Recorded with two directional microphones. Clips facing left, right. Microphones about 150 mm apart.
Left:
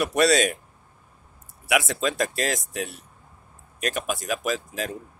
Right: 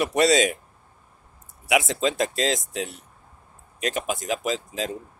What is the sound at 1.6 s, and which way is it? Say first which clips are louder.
Speech: right 2 dB; 20° right (ahead or behind).